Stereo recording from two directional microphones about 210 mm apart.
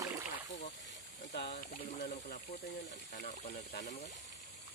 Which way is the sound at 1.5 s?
35° left (ahead or behind).